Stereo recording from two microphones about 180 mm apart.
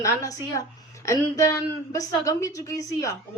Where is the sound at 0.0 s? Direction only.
15° left (ahead or behind).